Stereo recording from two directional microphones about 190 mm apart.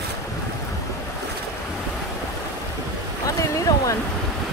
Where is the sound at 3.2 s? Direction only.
15° left (ahead or behind).